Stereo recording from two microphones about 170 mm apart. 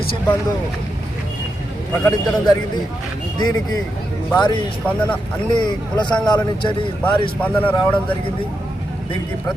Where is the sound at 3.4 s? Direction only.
25° left (ahead or behind).